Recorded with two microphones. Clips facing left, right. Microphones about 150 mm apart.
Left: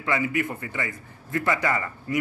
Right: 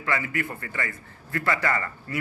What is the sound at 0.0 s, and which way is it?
A man's voice, 20° left (ahead or behind).